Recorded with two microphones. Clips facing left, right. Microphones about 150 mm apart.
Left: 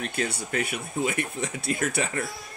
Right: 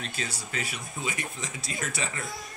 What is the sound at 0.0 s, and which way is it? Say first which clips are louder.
Speech: left 7 dB; 60° left (ahead or behind).